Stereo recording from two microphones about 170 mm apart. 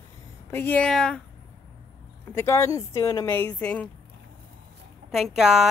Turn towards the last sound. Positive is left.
turn(degrees=-5)  # may be behind; listen again after turning